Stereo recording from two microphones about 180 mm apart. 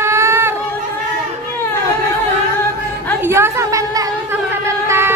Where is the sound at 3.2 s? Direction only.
15° right (ahead or behind).